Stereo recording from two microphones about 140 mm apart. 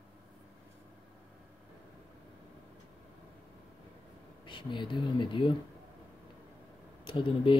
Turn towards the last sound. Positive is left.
turn(degrees=40)  # may be behind; listen again after turning